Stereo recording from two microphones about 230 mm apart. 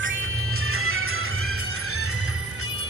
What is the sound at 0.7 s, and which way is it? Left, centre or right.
Music, right.